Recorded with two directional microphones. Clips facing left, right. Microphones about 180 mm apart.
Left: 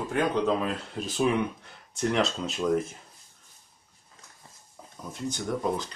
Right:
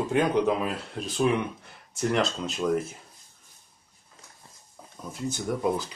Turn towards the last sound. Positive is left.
turn(degrees=-5)  # may be behind; listen again after turning